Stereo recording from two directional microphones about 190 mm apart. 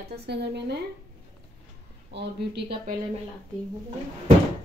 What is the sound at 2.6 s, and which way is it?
Speech, 55° right (ahead or behind).